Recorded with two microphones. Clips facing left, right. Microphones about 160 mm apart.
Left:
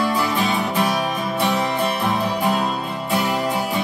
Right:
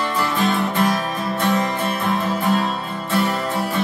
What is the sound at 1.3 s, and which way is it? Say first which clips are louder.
Music: right 2 dB; 10° left (ahead or behind).